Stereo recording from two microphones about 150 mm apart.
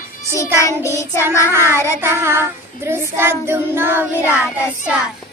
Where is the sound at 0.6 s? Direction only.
20° left (ahead or behind).